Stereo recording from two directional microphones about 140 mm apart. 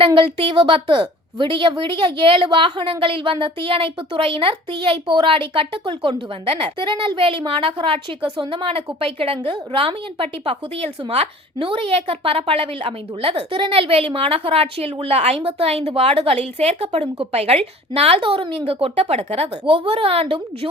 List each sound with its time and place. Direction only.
0.0 s a woman's voice: 40° right (ahead or behind)